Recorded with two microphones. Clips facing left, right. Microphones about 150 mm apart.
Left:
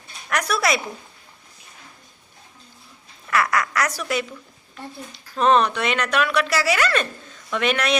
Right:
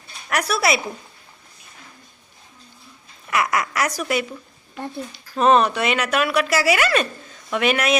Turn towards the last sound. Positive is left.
turn(degrees=-10)  # may be behind; listen again after turning